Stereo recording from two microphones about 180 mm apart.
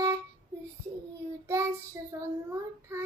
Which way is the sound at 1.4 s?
15° right (ahead or behind).